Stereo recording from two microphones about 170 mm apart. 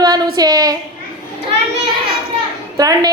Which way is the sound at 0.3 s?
25° right (ahead or behind).